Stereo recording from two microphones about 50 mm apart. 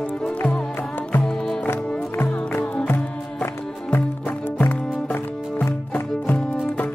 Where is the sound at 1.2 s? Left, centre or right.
Centre.